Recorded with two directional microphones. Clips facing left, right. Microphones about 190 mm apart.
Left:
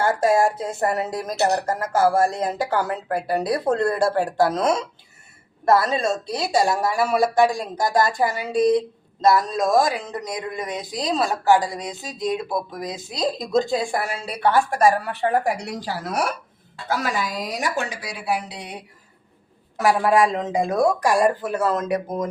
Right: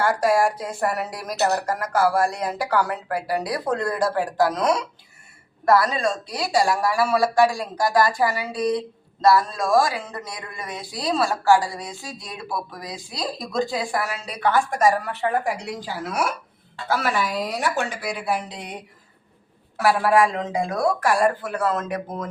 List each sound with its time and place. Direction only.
0.0 s speech: 25° left (ahead or behind)
18.3 s speech: 10° left (ahead or behind)